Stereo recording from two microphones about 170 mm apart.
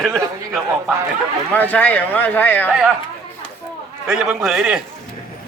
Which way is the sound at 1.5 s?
10° left (ahead or behind).